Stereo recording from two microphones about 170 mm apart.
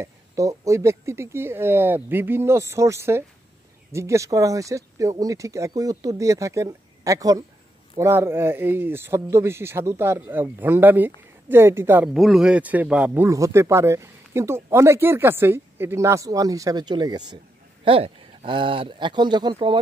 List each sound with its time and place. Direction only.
0.0 s speech: 20° right (ahead or behind)
12.1 s speech: centre (ahead or behind); by 19.8 s 25° right (ahead or behind)